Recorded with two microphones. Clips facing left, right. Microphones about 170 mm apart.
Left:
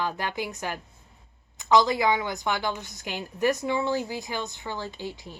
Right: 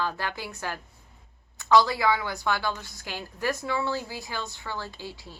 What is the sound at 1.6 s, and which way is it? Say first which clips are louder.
A woman's voice: even; 20° left (ahead or behind).